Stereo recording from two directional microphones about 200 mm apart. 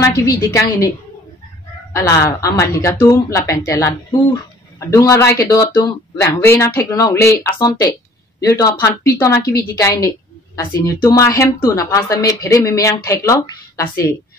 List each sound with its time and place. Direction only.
0.0 s a woman's voice: 15° left (ahead or behind)
2.0 s a woman's voice: 15° left (ahead or behind)